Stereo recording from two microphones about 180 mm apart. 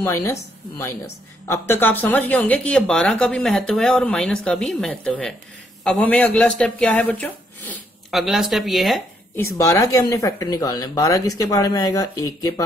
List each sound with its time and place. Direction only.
0.0 s a woman's voice: 15° left (ahead or behind)
8.2 s a woman's voice: centre (ahead or behind)
9.4 s speech: 15° left (ahead or behind)